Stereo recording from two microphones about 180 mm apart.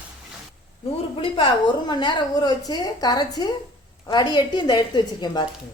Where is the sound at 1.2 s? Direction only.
30° left (ahead or behind).